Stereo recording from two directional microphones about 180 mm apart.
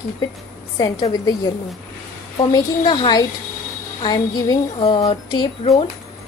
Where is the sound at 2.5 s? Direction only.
25° left (ahead or behind).